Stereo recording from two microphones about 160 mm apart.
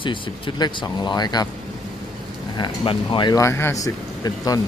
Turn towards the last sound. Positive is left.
turn(degrees=20)  # may be behind; listen again after turning